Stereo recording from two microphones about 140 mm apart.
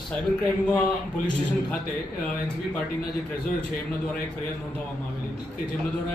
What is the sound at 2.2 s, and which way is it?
A man's voice, 5° left (ahead or behind).